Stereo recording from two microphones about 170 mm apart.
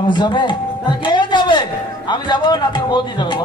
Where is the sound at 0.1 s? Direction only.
25° left (ahead or behind).